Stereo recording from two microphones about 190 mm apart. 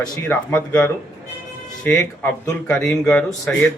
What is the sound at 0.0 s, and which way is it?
Speech, 10° left (ahead or behind).